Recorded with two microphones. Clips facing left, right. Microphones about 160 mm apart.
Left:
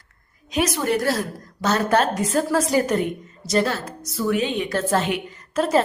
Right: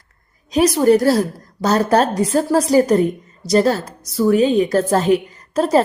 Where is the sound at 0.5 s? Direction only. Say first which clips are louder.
Right 9 dB; 35° right (ahead or behind).